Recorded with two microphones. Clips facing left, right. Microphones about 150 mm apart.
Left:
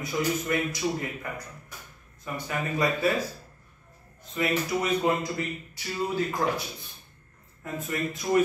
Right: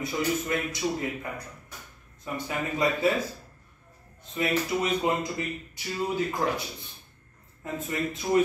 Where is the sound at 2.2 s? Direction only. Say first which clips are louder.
Even; 25° right (ahead or behind).